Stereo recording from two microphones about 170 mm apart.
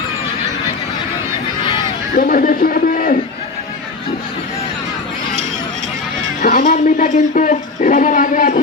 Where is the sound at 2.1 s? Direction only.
55° left (ahead or behind).